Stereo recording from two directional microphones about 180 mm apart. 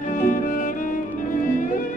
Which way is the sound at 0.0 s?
45° left (ahead or behind).